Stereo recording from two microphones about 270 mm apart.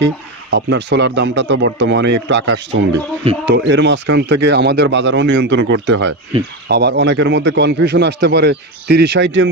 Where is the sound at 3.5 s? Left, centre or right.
Right.